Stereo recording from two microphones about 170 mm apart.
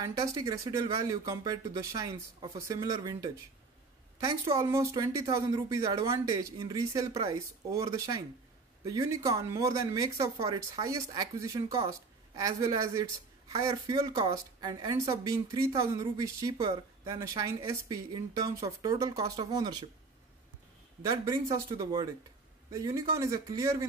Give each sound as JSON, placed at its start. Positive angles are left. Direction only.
{"t": 0.0, "sound": "speech", "side_deg": -20}
{"t": 4.5, "sound": "speech", "side_deg": -15}
{"t": 21.6, "sound": "speech", "side_deg": -25}